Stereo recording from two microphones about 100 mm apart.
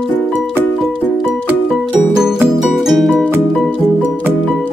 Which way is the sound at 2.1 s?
5° right (ahead or behind).